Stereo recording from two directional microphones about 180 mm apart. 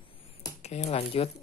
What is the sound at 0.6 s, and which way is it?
Speech, 35° left (ahead or behind).